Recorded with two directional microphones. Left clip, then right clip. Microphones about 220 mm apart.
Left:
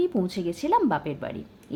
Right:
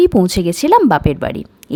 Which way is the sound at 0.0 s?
45° right (ahead or behind).